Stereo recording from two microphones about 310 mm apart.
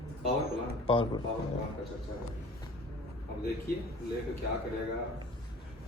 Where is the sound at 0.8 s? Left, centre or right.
Centre.